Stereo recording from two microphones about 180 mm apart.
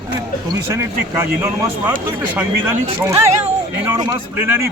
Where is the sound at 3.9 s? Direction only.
15° right (ahead or behind).